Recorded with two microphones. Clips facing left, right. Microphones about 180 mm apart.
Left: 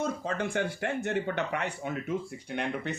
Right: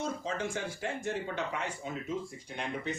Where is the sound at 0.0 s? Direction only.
60° left (ahead or behind).